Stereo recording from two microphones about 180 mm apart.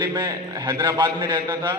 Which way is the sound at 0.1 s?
20° right (ahead or behind).